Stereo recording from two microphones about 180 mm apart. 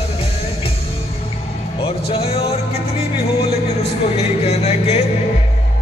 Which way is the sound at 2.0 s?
35° left (ahead or behind).